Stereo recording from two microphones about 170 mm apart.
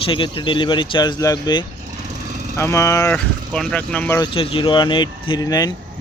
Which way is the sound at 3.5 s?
5° left (ahead or behind).